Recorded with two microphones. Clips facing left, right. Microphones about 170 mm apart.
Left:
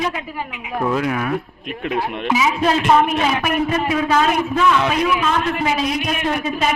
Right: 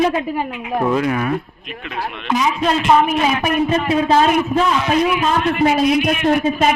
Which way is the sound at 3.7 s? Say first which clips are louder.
Right 3 dB; 30° right (ahead or behind).